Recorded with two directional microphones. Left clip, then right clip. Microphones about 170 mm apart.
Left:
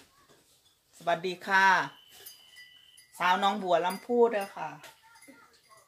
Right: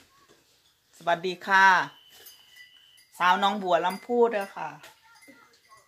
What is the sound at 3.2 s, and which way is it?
Speech, 5° right (ahead or behind).